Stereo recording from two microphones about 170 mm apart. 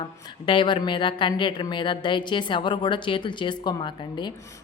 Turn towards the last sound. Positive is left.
turn(degrees=25)  # may be behind; listen again after turning